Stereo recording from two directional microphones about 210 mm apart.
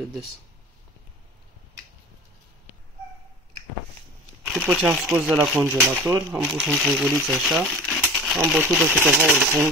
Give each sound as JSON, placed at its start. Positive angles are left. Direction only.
{"t": 4.4, "sound": "speech", "side_deg": -5}
{"t": 8.1, "sound": "a sound", "side_deg": -5}
{"t": 8.6, "sound": "speech", "side_deg": 0}
{"t": 8.9, "sound": "speech", "side_deg": 10}
{"t": 9.2, "sound": "speech", "side_deg": -10}